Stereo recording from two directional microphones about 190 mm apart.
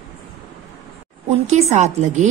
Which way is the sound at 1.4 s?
35° right (ahead or behind).